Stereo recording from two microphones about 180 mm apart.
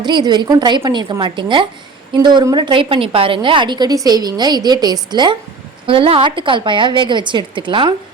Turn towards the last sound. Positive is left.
turn(degrees=-25)  # may be behind; listen again after turning